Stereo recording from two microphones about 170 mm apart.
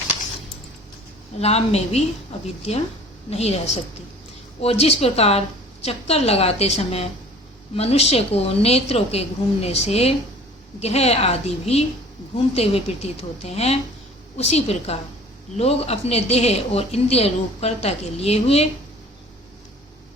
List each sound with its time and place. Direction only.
1.4 s a woman's voice: 40° left (ahead or behind)
3.2 s a woman's voice: 40° left (ahead or behind)